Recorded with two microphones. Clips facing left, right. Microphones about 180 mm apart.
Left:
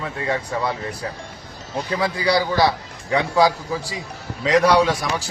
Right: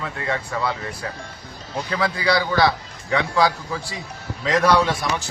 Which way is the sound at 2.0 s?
10° left (ahead or behind).